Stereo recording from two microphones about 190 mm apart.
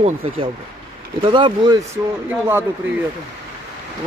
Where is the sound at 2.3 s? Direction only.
10° right (ahead or behind).